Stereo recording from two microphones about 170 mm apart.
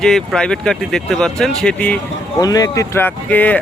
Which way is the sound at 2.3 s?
20° left (ahead or behind).